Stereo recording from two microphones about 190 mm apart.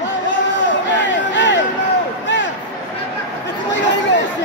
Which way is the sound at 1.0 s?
70° left (ahead or behind).